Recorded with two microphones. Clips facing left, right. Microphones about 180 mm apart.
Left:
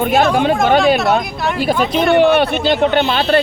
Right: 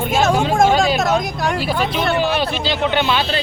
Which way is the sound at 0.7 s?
60° left (ahead or behind).